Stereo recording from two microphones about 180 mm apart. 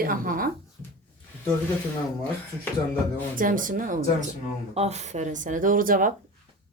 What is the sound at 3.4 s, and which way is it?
Speech, 50° right (ahead or behind).